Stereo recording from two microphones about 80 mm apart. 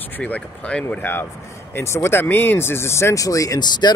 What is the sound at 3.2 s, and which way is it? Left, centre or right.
Speech, left.